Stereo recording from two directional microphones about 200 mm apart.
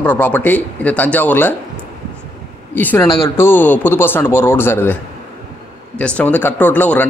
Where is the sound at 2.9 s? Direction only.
15° left (ahead or behind).